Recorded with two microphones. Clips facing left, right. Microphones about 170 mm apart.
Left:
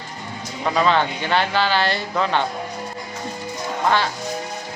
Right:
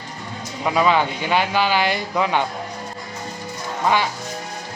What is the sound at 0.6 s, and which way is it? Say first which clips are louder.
A man's voice: right 1 dB; 10° right (ahead or behind).